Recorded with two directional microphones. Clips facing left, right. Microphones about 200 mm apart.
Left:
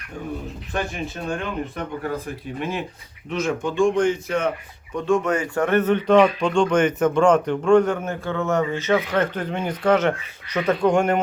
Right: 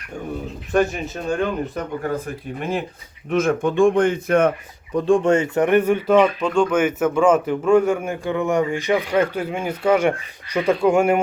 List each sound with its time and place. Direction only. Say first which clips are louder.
0.7 s speech: right 8 dB; 40° right (ahead or behind)
4.9 s speech: right 4 dB; 35° right (ahead or behind); by 11.2 s 10° right (ahead or behind)